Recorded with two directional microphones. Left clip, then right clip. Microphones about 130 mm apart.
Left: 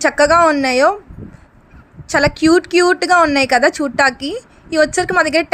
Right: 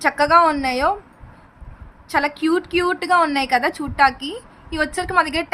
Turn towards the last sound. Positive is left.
turn(degrees=35)  # may be behind; listen again after turning